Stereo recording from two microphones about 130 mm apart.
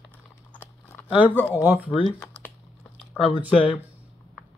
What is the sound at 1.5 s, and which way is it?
Speech, 15° right (ahead or behind).